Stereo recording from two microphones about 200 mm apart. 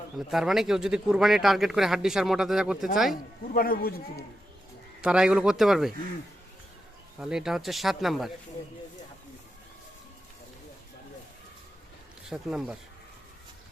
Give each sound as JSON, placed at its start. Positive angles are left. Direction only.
{"t": 0.2, "sound": "speech", "side_deg": 0}
{"t": 3.5, "sound": "a man's voice", "side_deg": 45}
{"t": 4.9, "sound": "speech", "side_deg": -5}
{"t": 7.2, "sound": "speech", "side_deg": -5}
{"t": 12.3, "sound": "speech", "side_deg": -5}